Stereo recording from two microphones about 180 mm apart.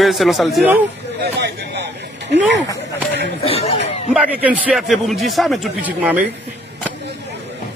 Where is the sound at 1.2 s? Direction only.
65° right (ahead or behind).